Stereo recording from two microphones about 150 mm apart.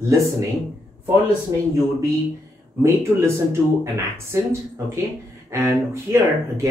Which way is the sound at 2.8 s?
20° right (ahead or behind).